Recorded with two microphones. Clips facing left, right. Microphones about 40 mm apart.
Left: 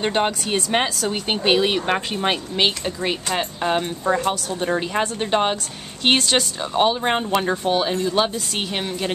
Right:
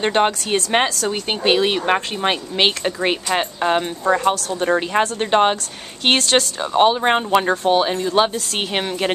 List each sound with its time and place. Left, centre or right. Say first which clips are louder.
0.0 s speech: right 3 dB; centre
1.1 s speech: left 1 dB; centre
2.6 s speech: right 4 dB; right
3.6 s speech: right 2 dB; centre
6.1 s speech: right 4 dB; centre
6.6 s speech: right 5 dB; centre